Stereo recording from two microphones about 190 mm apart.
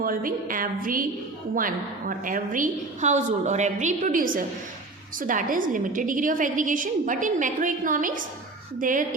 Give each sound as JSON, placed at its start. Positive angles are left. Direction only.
{"t": 0.0, "sound": "a woman's voice", "side_deg": -50}